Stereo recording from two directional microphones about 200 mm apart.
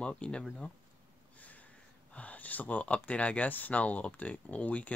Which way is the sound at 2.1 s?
5° left (ahead or behind).